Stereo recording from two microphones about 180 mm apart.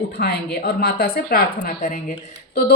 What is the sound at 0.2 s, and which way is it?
A woman's voice, 60° left (ahead or behind).